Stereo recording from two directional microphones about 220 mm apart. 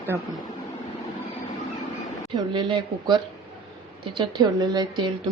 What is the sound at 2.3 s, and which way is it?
A woman's voice, 20° right (ahead or behind).